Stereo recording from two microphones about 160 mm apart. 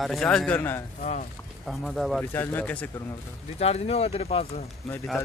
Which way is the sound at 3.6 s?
40° left (ahead or behind).